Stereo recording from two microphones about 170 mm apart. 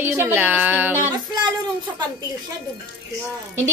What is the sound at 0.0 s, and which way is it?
A woman's voice, 15° right (ahead or behind).